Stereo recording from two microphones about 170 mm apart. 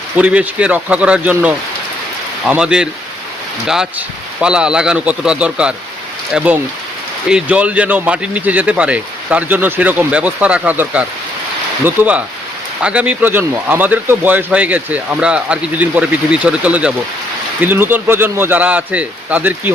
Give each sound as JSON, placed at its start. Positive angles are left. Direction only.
{"t": 0.2, "sound": "a man's voice", "side_deg": -5}
{"t": 4.4, "sound": "a man's voice", "side_deg": -5}